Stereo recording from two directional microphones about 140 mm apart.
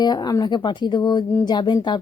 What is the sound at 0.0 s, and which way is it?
A woman's voice, 30° left (ahead or behind).